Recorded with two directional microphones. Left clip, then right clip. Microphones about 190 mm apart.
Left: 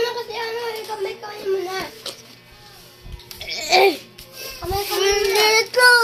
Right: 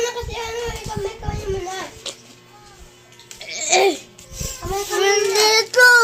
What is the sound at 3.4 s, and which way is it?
Babbling, centre (ahead or behind).